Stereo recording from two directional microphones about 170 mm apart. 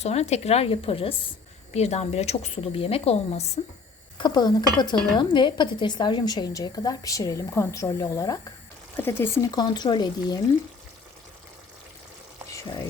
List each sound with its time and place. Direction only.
0.0 s speech: 40° left (ahead or behind)
4.2 s a woman's voice: 25° left (ahead or behind)